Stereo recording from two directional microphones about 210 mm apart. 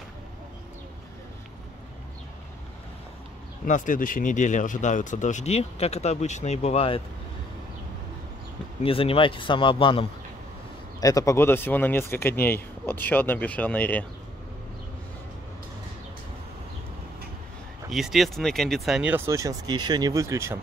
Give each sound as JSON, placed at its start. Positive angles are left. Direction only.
{"t": 3.6, "sound": "speech", "side_deg": 35}
{"t": 8.8, "sound": "a man's voice", "side_deg": 25}
{"t": 17.8, "sound": "speech", "side_deg": 0}